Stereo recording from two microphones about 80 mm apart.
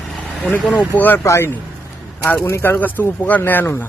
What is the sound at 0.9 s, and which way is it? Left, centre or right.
Speech, left.